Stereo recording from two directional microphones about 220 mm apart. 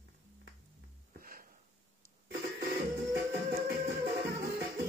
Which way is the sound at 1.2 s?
40° right (ahead or behind).